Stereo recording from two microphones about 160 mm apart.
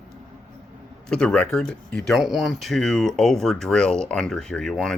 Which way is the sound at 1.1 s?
5° left (ahead or behind).